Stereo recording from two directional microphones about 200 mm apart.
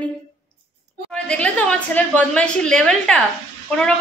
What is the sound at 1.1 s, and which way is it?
A woman's voice, 5° left (ahead or behind).